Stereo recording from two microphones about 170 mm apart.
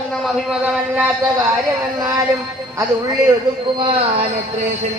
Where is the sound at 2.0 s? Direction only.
20° right (ahead or behind).